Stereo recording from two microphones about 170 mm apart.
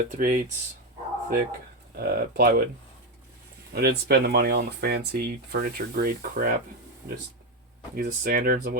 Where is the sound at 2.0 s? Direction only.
60° right (ahead or behind).